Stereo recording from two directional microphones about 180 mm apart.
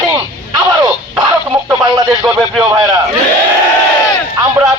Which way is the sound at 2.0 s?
5° right (ahead or behind).